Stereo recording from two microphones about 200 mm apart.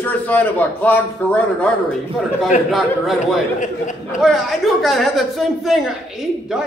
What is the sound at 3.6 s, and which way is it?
Speech, 40° left (ahead or behind).